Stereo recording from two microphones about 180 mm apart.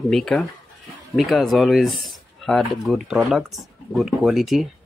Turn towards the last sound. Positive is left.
turn(degrees=0)  # may be behind; listen again after turning